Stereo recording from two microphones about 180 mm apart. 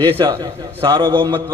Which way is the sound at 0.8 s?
30° right (ahead or behind).